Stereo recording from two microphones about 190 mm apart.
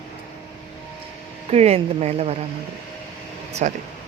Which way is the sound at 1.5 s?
35° right (ahead or behind).